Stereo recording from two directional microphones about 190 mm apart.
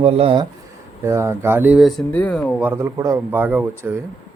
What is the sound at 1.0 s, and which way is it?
Speech, 15° right (ahead or behind).